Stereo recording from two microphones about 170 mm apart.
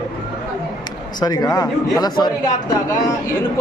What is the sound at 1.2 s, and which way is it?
Speech, 25° left (ahead or behind).